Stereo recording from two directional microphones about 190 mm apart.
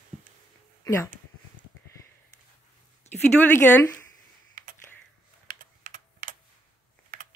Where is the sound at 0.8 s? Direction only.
15° left (ahead or behind).